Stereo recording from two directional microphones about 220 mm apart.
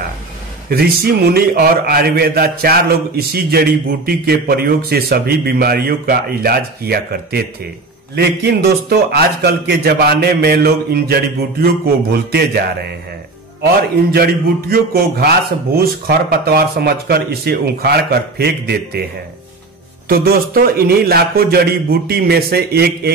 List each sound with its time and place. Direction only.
0.7 s a man's voice: 45° right (ahead or behind)
14.1 s a man's voice: 45° right (ahead or behind)
20.1 s a man's voice: 40° right (ahead or behind)